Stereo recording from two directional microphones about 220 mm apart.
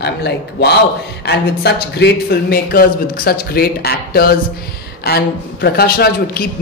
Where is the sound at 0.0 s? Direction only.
50° left (ahead or behind).